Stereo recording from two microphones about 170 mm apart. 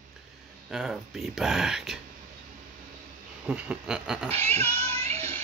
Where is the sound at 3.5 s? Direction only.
5° right (ahead or behind).